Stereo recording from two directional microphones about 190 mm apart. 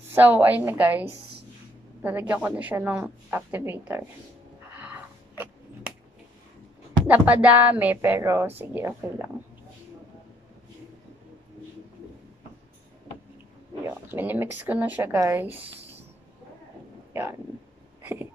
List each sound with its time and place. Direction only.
0.1 s a woman's voice: 10° right (ahead or behind)
2.0 s a woman's voice: 10° right (ahead or behind)
4.7 s a sound: 10° right (ahead or behind)
7.1 s a woman's voice: 10° right (ahead or behind)
13.8 s a woman's voice: 10° right (ahead or behind)
15.4 s speech: 30° right (ahead or behind)
17.1 s speech: 15° right (ahead or behind)
18.0 s a sound: 10° right (ahead or behind)